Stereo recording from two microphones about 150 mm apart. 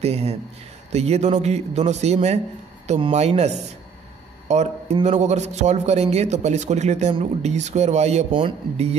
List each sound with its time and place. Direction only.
0.0 s a man's voice: 45° right (ahead or behind)